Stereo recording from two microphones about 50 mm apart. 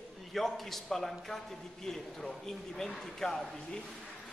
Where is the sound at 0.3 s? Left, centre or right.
Centre.